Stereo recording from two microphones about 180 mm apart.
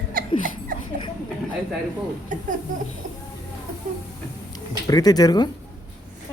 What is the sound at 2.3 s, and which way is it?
Speech, 45° right (ahead or behind).